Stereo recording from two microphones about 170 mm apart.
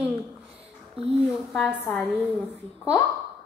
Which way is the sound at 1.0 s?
35° right (ahead or behind).